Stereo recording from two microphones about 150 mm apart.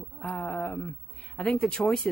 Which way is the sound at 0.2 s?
10° left (ahead or behind).